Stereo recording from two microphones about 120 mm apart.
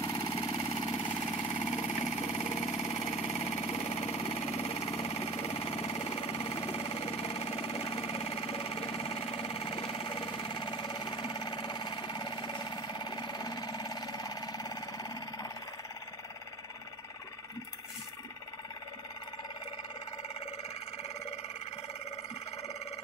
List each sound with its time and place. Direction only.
0.0 s engine: 30° left (ahead or behind)
0.9 s engine: 40° left (ahead or behind)
1.6 s engine: 65° left (ahead or behind); by 15.5 s 35° left (ahead or behind)